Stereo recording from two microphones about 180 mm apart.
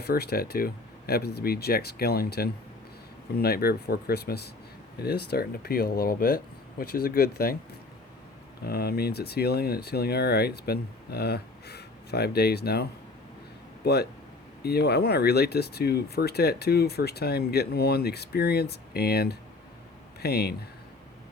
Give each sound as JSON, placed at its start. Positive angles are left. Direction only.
{"t": 0.0, "sound": "speech", "side_deg": 60}
{"t": 8.6, "sound": "speech", "side_deg": 60}